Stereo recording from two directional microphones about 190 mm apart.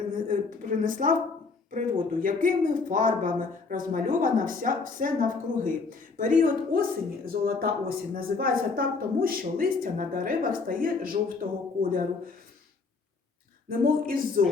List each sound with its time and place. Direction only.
0.3 s a sound: 45° right (ahead or behind)
1.7 s speech: 45° right (ahead or behind)
13.7 s speech: 50° right (ahead or behind)